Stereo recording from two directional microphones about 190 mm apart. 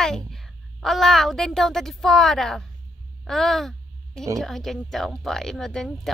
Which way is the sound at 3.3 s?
Centre (ahead or behind).